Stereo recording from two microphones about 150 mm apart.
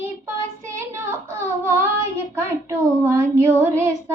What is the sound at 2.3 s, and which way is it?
Child singing, 15° right (ahead or behind).